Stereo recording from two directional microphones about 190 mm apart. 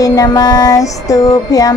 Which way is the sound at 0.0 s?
20° left (ahead or behind).